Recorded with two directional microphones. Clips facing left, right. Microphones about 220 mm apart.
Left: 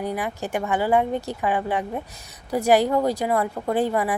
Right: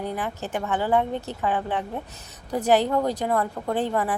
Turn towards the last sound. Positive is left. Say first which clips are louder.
# left 3 dB
turn(degrees=10)  # may be behind; listen again after turning